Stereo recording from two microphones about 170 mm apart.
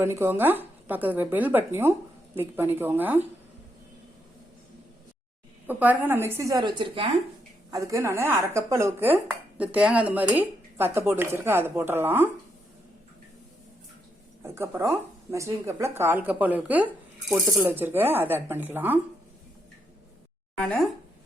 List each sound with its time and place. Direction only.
0.0 s speech: 15° right (ahead or behind)
5.6 s speech: 10° right (ahead or behind)
14.4 s speech: 15° right (ahead or behind)
20.6 s speech: 5° left (ahead or behind)